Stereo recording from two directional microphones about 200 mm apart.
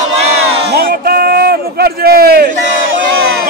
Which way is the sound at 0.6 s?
50° right (ahead or behind).